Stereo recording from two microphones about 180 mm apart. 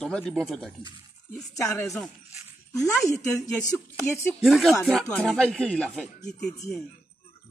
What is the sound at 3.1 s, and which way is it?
Speech, 20° left (ahead or behind).